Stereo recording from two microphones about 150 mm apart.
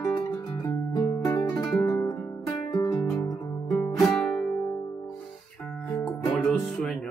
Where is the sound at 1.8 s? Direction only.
25° left (ahead or behind).